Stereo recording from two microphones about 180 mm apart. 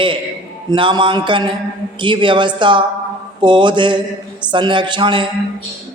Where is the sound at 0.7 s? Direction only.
25° right (ahead or behind).